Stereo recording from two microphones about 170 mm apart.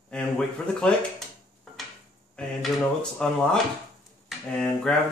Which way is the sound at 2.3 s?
5° left (ahead or behind).